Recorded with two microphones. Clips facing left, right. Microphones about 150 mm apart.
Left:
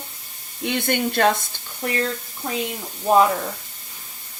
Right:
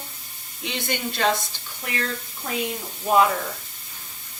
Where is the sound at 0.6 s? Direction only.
55° left (ahead or behind).